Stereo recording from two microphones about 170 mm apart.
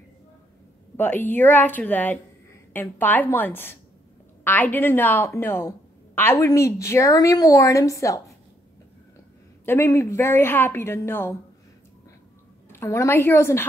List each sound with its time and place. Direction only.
0.9 s a woman's voice: 10° left (ahead or behind)
9.7 s a woman's voice: 15° left (ahead or behind)
12.6 s a woman's voice: 15° left (ahead or behind)